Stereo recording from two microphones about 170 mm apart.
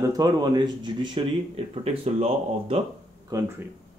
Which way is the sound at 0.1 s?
25° right (ahead or behind).